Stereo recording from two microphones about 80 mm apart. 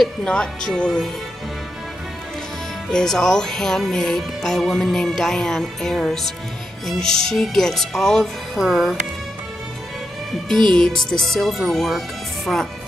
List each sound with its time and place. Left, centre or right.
0.0 s speech: centre
2.9 s speech: centre
8.5 s speech: centre
11.1 s speech: centre